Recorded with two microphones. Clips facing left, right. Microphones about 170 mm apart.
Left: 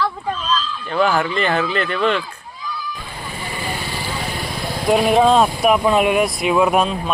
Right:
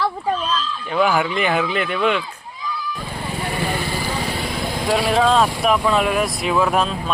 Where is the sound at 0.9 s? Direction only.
10° right (ahead or behind).